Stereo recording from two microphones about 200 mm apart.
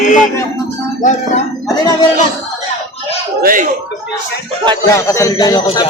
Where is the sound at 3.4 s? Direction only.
45° right (ahead or behind).